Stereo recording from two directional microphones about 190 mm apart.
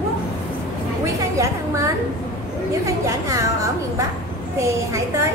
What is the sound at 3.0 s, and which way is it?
Speech, 15° right (ahead or behind).